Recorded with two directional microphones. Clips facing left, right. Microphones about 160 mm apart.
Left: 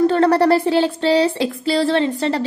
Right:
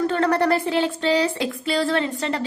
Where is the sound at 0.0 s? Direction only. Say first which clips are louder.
Left 6 dB; 35° left (ahead or behind).